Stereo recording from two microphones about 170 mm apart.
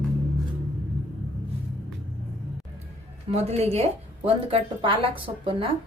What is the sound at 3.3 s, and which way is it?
A woman's voice, 35° right (ahead or behind).